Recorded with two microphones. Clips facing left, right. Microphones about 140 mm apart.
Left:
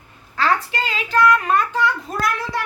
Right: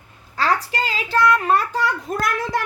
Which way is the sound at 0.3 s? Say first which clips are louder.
Left 1 dB; 35° right (ahead or behind).